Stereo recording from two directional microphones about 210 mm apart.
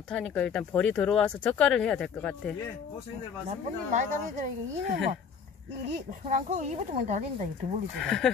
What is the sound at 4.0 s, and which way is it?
Speech, 40° right (ahead or behind).